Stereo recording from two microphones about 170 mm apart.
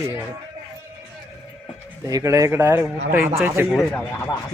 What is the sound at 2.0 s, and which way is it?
Speech, 20° right (ahead or behind).